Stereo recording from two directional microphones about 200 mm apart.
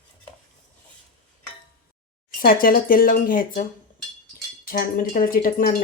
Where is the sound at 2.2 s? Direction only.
45° left (ahead or behind).